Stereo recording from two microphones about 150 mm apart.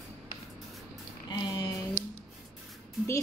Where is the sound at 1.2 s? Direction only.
30° left (ahead or behind).